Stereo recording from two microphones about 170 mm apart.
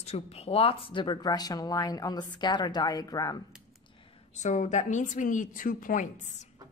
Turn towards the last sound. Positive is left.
turn(degrees=50)  # may be behind; listen again after turning